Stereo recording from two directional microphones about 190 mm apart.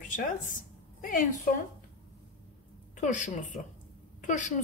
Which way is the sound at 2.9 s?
40° left (ahead or behind).